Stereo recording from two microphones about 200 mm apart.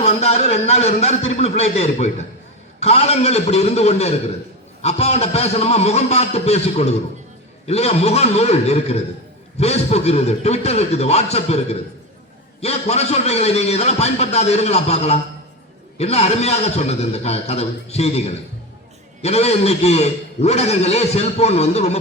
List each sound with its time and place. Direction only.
0.0 s a man's voice: 30° left (ahead or behind)